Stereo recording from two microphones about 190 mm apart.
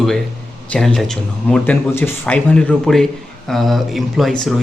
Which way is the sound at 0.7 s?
5° left (ahead or behind).